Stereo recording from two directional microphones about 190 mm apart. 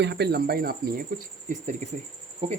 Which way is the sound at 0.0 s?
60° right (ahead or behind).